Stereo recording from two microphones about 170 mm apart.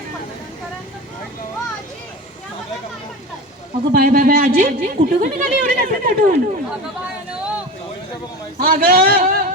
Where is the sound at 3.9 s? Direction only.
55° right (ahead or behind).